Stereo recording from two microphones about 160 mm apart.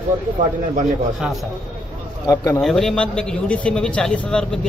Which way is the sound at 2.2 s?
20° left (ahead or behind).